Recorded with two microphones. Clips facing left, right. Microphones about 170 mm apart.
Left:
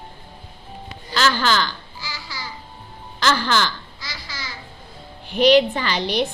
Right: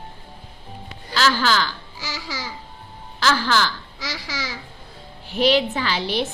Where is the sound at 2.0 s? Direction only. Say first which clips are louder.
Right 4 dB; 90° right.